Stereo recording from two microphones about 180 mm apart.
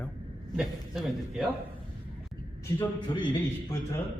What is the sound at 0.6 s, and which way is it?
Speech, centre (ahead or behind).